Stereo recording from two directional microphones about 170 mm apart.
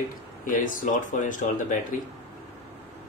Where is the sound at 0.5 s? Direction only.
50° left (ahead or behind).